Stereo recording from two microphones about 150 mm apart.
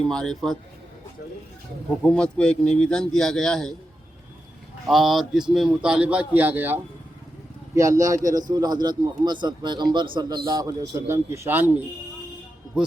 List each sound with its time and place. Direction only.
0.1 s a man's voice: 5° left (ahead or behind)
2.0 s a man's voice: 5° left (ahead or behind)
4.9 s a man's voice: centre (ahead or behind)
7.8 s a man's voice: 20° right (ahead or behind); by 12.9 s 5° right (ahead or behind)